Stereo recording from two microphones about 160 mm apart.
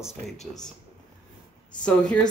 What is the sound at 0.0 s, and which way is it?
Speech, centre (ahead or behind).